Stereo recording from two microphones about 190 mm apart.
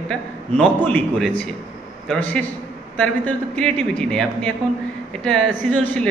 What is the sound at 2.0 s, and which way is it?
A man's voice, 5° left (ahead or behind).